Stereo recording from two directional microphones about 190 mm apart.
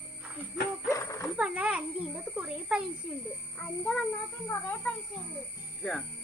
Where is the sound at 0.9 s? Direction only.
15° left (ahead or behind).